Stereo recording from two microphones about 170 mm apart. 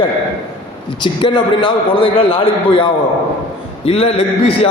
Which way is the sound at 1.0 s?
30° left (ahead or behind).